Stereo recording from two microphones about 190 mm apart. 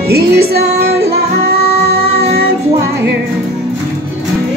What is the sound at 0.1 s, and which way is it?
Music, 55° right (ahead or behind).